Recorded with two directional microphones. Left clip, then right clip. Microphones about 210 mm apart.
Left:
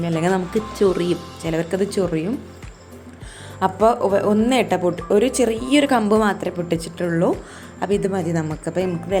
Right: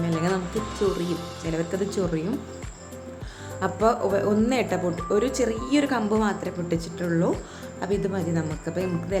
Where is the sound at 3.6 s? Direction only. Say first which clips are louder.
Left 6 dB; 20° left (ahead or behind).